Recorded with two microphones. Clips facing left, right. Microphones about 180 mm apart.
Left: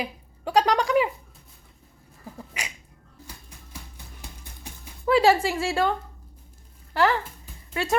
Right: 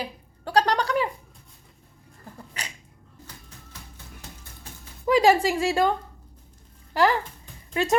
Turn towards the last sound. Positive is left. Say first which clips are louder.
# right 2 dB
turn(degrees=-20)  # may be behind; listen again after turning